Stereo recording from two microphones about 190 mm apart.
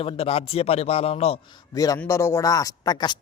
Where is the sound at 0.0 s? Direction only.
30° left (ahead or behind).